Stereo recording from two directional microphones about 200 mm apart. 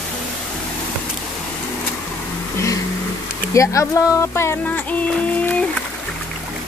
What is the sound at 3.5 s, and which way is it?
Music, 15° left (ahead or behind).